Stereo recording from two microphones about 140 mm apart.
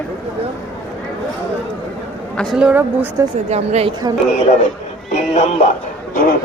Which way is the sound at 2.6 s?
10° right (ahead or behind).